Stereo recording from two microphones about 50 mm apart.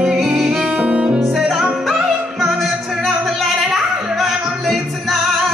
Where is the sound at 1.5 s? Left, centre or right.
Centre.